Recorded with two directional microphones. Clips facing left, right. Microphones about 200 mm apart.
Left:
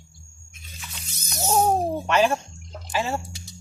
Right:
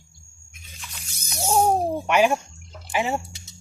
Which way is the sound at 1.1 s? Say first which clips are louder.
Right 1 dB; 10° right (ahead or behind).